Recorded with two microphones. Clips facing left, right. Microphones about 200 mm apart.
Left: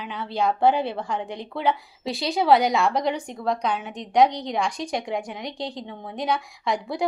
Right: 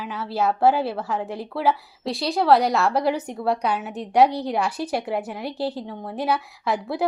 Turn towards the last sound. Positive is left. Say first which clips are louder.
# right 1 dB
turn(degrees=-5)  # may be behind; listen again after turning